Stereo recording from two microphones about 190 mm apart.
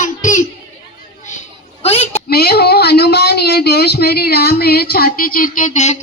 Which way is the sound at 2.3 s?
55° left (ahead or behind).